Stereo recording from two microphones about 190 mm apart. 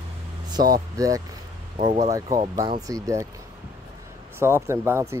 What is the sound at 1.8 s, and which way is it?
Speech, 40° right (ahead or behind).